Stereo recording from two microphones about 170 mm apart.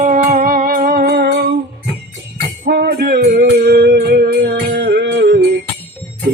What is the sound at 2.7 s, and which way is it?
Music, 65° right (ahead or behind).